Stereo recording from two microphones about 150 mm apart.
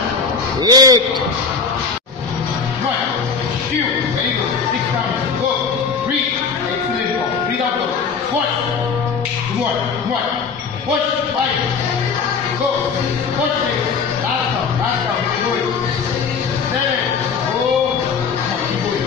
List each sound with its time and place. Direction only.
0.7 s a man's voice: 25° right (ahead or behind)